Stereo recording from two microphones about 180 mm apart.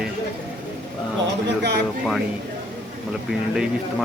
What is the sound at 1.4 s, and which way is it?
Speech, 70° right (ahead or behind).